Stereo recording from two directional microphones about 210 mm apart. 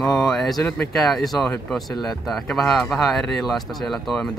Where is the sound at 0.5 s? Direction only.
15° left (ahead or behind).